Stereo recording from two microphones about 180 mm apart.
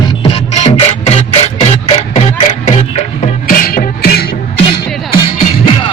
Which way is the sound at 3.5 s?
55° left (ahead or behind).